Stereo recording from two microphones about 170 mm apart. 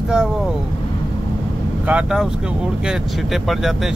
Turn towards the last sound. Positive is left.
turn(degrees=0)  # may be behind; listen again after turning